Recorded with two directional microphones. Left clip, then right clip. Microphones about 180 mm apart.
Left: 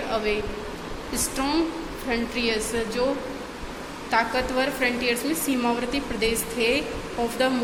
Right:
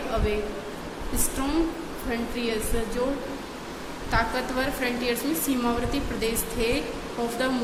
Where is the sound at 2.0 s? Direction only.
10° left (ahead or behind).